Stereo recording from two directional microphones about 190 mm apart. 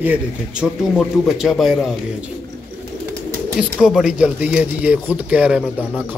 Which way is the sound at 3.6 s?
5° right (ahead or behind).